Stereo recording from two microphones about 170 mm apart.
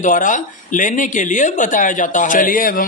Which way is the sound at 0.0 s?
50° left (ahead or behind).